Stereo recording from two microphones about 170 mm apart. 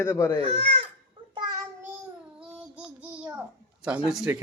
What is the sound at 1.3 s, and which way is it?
Child singing, 25° right (ahead or behind).